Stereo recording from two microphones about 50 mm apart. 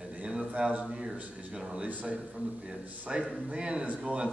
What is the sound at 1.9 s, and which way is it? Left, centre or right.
Speech, right.